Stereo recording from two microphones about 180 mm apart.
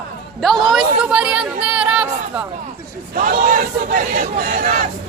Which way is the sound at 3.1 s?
50° right (ahead or behind).